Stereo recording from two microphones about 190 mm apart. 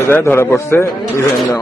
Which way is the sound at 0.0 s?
10° left (ahead or behind).